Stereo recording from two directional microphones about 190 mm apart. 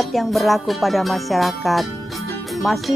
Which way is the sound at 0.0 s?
Centre (ahead or behind).